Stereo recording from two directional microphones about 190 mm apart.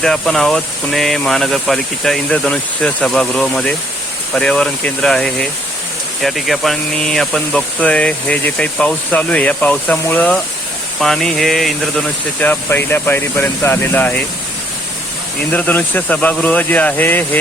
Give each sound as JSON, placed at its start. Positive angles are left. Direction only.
{"t": 0.0, "sound": "speech", "side_deg": 0}
{"t": 15.5, "sound": "speech", "side_deg": 10}